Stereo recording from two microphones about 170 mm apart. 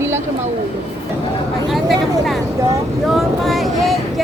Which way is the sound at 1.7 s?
Centre (ahead or behind).